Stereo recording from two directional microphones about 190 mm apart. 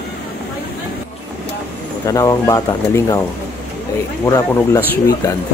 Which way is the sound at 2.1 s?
20° left (ahead or behind).